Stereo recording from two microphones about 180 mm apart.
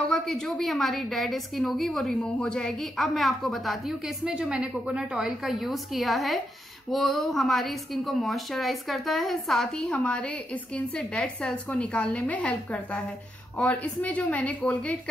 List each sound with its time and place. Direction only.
0.1 s a woman's voice: centre (ahead or behind)